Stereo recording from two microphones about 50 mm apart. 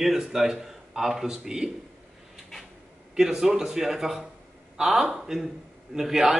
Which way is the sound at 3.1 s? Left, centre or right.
Centre.